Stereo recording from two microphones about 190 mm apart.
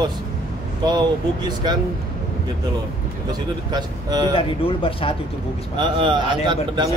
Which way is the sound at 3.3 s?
20° right (ahead or behind).